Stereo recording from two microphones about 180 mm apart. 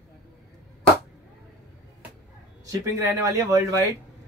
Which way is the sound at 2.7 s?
20° right (ahead or behind).